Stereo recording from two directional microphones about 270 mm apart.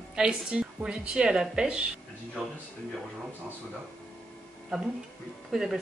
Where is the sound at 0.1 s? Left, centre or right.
Centre.